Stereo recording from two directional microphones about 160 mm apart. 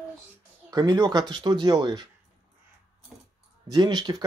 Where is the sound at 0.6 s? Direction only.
25° right (ahead or behind).